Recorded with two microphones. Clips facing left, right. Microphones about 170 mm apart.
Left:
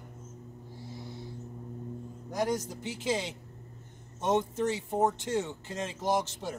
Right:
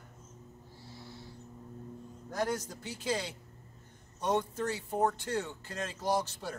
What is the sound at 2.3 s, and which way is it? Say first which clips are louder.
Speech: left 3 dB; 15° left (ahead or behind).